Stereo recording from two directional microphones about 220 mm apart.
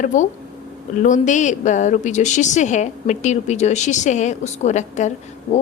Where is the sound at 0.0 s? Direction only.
35° left (ahead or behind).